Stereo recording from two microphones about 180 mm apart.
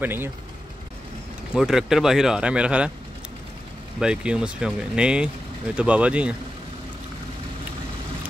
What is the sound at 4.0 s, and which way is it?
Speech, 5° right (ahead or behind).